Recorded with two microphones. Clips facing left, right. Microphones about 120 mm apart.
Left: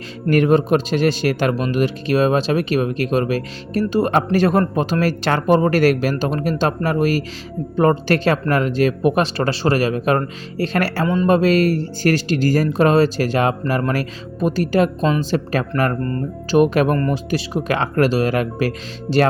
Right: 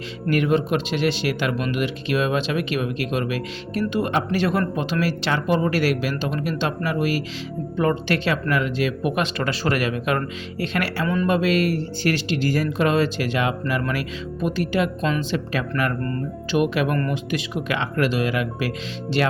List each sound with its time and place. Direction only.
0.3 s speech: 45° left (ahead or behind)